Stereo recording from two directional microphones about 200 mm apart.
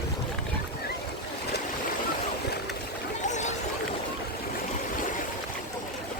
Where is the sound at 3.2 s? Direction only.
35° left (ahead or behind).